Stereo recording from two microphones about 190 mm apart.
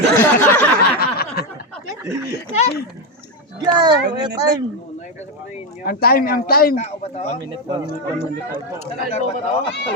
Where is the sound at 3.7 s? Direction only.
25° right (ahead or behind).